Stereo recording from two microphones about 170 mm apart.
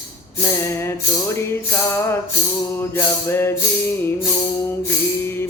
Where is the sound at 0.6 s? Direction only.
15° left (ahead or behind).